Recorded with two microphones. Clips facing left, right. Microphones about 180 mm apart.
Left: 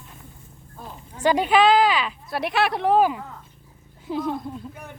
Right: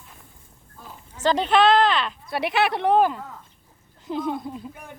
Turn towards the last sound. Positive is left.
turn(degrees=0)  # may be behind; listen again after turning